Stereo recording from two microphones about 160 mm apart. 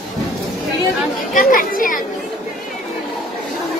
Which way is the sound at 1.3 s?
60° left (ahead or behind).